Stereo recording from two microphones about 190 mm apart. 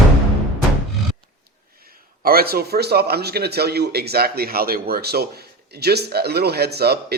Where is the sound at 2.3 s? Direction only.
50° right (ahead or behind).